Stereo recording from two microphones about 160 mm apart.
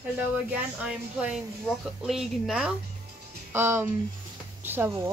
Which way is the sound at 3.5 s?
15° right (ahead or behind).